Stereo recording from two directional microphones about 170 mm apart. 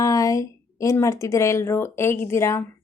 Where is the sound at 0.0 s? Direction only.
20° left (ahead or behind).